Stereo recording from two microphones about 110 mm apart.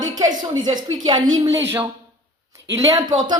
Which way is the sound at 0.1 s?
35° right (ahead or behind).